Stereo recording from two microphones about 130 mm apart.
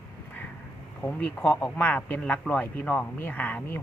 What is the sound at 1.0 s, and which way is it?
Speech, 10° left (ahead or behind).